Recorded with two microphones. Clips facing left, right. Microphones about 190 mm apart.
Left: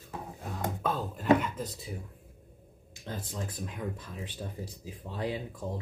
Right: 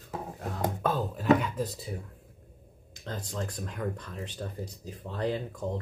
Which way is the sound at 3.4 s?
5° left (ahead or behind).